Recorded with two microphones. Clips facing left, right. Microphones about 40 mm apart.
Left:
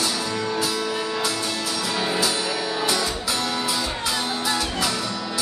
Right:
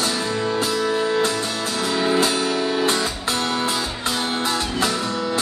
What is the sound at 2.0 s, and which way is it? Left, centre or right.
Music, right.